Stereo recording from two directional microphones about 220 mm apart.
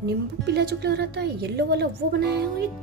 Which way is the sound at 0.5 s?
50° right (ahead or behind).